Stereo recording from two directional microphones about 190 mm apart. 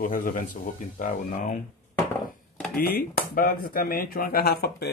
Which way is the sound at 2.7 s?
50° left (ahead or behind).